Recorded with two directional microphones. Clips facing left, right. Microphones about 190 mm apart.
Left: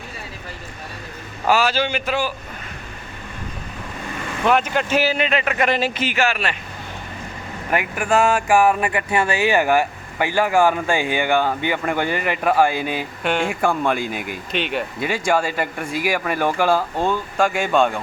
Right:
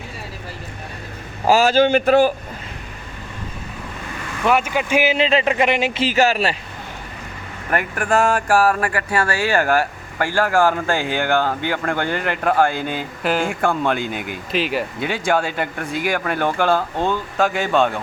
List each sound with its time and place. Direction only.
1.5 s a man's voice: 40° right (ahead or behind)
4.4 s speech: 5° right (ahead or behind)
5.1 s speech: 30° right (ahead or behind)
6.0 s speech: 35° right (ahead or behind)
7.7 s speech: 5° left (ahead or behind)
8.4 s speech: 15° left (ahead or behind)